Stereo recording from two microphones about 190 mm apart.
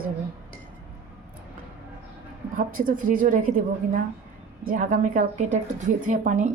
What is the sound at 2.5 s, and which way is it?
Speech, 45° right (ahead or behind).